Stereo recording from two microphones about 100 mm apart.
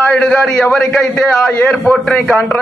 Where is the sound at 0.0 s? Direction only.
10° left (ahead or behind).